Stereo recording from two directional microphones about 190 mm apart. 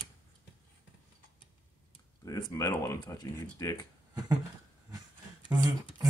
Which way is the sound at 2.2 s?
20° left (ahead or behind).